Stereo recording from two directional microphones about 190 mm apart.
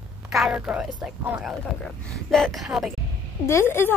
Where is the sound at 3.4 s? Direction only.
15° left (ahead or behind).